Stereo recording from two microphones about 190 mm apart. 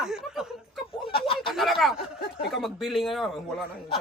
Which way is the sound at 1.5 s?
Centre (ahead or behind).